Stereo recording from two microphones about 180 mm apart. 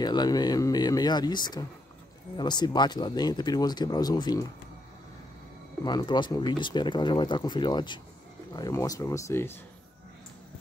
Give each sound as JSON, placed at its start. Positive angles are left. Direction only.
{"t": 0.0, "sound": "speech", "side_deg": 25}
{"t": 5.9, "sound": "speech", "side_deg": 25}